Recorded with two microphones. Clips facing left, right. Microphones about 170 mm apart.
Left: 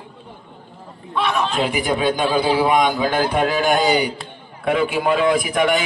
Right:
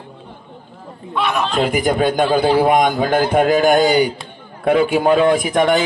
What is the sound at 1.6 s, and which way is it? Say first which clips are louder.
A man's voice: right 5 dB; 45° right (ahead or behind).